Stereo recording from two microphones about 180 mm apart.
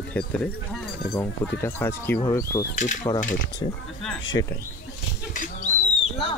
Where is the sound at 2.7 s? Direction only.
45° left (ahead or behind).